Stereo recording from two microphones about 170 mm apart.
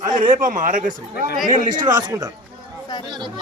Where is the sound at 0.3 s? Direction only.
50° right (ahead or behind).